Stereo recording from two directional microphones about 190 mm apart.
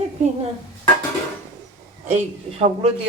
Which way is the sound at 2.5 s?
30° right (ahead or behind).